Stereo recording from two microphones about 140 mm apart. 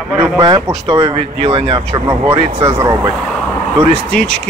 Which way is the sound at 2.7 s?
25° right (ahead or behind).